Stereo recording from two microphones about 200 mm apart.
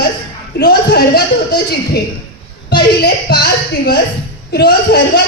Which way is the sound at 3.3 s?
55° left (ahead or behind).